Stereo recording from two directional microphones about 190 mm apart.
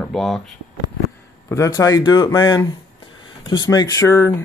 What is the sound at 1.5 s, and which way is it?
Speech, 15° left (ahead or behind).